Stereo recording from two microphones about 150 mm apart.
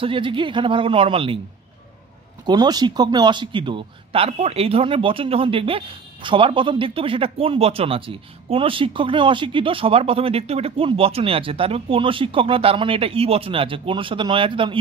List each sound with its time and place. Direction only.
0.0 s speech: 35° right (ahead or behind)
2.4 s speech: 25° right (ahead or behind)